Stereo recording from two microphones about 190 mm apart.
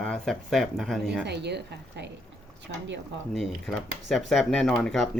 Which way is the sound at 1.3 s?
60° right (ahead or behind).